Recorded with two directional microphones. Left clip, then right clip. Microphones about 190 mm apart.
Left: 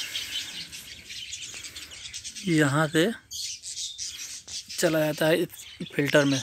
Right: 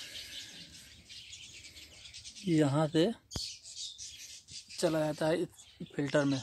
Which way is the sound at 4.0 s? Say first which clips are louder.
Left 11 dB; 50° right (ahead or behind).